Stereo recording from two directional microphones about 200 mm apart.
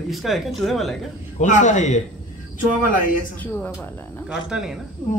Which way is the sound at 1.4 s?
35° left (ahead or behind).